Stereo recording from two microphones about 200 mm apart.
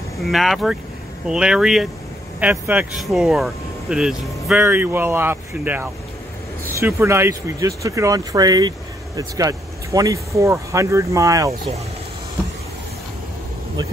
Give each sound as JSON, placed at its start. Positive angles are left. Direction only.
{"t": 0.2, "sound": "speech", "side_deg": 0}